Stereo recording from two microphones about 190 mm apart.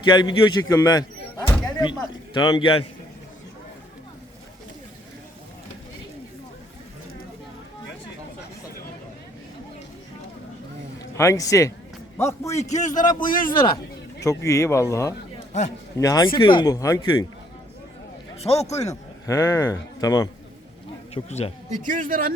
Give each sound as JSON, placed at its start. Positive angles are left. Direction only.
{"t": 0.0, "sound": "a man's voice", "side_deg": 25}
{"t": 1.6, "sound": "a sound", "side_deg": 20}
{"t": 2.3, "sound": "a man's voice", "side_deg": 25}
{"t": 11.1, "sound": "a man's voice", "side_deg": 15}
{"t": 12.5, "sound": "a man's voice", "side_deg": 40}
{"t": 14.3, "sound": "a man's voice", "side_deg": 15}
{"t": 18.3, "sound": "a man's voice", "side_deg": 35}
{"t": 18.9, "sound": "speech", "side_deg": 15}
{"t": 21.1, "sound": "speech", "side_deg": 35}
{"t": 21.7, "sound": "speech", "side_deg": -45}